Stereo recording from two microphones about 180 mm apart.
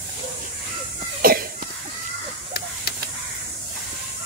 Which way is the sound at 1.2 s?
55° right (ahead or behind).